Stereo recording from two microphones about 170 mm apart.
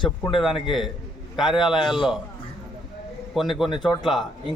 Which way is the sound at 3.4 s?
Centre (ahead or behind).